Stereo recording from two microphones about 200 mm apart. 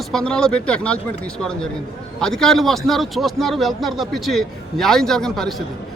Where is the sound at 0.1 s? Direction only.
5° left (ahead or behind).